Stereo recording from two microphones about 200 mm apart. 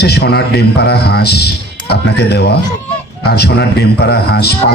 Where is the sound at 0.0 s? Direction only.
55° left (ahead or behind).